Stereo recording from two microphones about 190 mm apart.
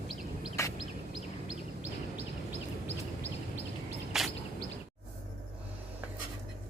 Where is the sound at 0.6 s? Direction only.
15° left (ahead or behind).